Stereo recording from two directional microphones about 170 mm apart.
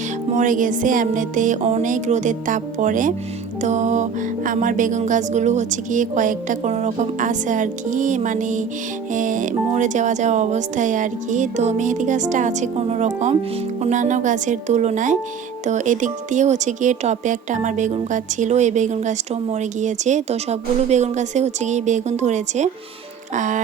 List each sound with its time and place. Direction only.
0.3 s music: 50° right (ahead or behind)